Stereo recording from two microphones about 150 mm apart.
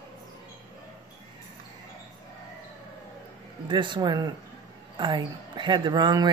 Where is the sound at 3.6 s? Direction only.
30° right (ahead or behind).